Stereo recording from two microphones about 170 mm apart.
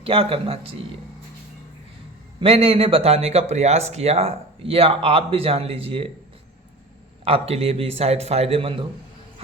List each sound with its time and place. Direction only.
0.0 s speech: 35° right (ahead or behind)
2.4 s speech: 35° right (ahead or behind)
7.3 s speech: 35° right (ahead or behind)